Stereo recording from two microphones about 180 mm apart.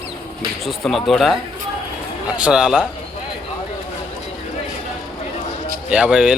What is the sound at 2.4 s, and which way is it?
Speech, 5° right (ahead or behind).